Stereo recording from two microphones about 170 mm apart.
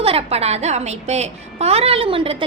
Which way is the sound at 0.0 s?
35° right (ahead or behind).